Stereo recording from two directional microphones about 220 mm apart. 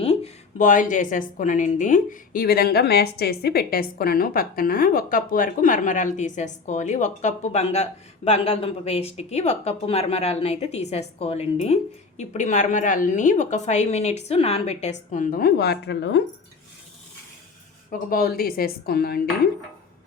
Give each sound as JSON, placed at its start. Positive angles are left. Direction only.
{"t": 0.0, "sound": "speech", "side_deg": 25}
{"t": 18.1, "sound": "speech", "side_deg": 40}